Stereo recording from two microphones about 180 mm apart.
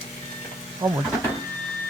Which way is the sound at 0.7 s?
20° right (ahead or behind).